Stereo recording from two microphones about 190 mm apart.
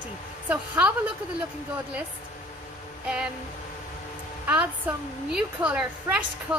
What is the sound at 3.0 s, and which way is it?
Music, 5° right (ahead or behind).